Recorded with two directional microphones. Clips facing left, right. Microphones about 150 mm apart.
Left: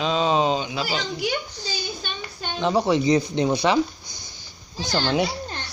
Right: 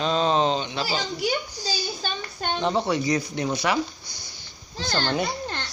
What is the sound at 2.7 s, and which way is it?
Speech, 15° left (ahead or behind).